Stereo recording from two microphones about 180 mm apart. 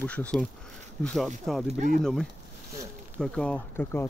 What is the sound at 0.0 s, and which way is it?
Speech, 5° left (ahead or behind).